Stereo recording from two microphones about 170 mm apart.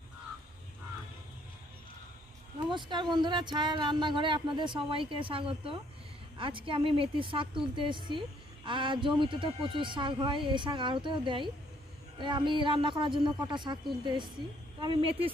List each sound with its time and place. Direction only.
2.7 s a woman's voice: 25° right (ahead or behind)